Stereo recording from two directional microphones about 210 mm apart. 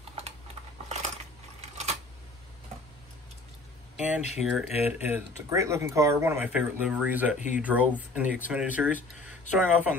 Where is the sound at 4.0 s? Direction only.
5° right (ahead or behind).